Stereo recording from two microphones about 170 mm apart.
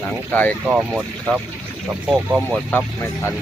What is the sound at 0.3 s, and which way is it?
Speech, 10° left (ahead or behind).